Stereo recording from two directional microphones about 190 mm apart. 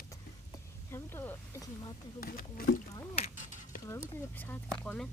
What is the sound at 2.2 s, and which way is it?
Speech, 50° left (ahead or behind).